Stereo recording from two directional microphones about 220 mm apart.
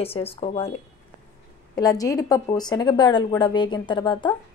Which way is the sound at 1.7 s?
15° left (ahead or behind).